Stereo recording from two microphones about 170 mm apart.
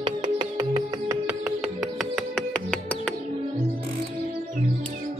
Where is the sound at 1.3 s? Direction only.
5° right (ahead or behind).